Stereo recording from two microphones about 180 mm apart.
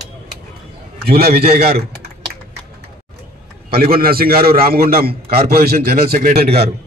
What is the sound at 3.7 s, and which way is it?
A man's voice, 60° right (ahead or behind).